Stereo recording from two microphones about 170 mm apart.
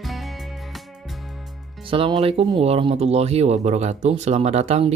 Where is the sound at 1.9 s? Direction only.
30° right (ahead or behind).